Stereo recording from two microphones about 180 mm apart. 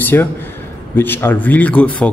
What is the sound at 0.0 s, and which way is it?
A man's voice, 10° left (ahead or behind).